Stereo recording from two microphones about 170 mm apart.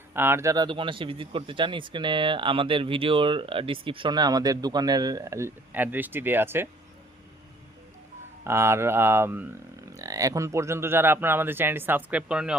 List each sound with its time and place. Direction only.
0.1 s speech: 15° right (ahead or behind)
8.4 s speech: 15° right (ahead or behind)